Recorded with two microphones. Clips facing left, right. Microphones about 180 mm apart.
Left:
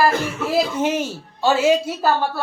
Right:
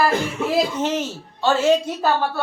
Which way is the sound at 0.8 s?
10° left (ahead or behind).